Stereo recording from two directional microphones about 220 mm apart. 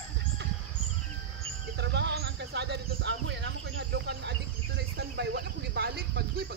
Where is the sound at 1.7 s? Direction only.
50° right (ahead or behind).